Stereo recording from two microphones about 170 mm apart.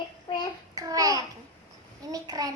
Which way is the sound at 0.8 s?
20° right (ahead or behind).